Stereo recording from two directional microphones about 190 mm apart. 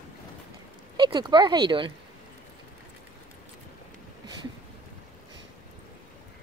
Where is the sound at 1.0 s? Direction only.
25° right (ahead or behind).